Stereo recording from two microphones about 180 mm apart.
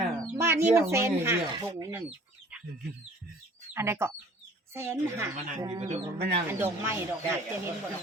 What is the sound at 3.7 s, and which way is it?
Speech, 15° right (ahead or behind).